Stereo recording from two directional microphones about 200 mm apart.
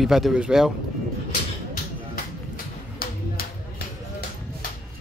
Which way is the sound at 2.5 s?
50° left (ahead or behind).